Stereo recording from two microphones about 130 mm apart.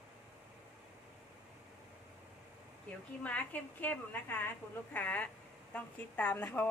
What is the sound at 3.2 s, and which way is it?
A woman's voice, 10° left (ahead or behind).